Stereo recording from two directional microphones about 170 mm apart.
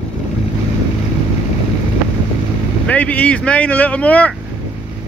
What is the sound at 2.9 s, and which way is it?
Speech, 10° left (ahead or behind).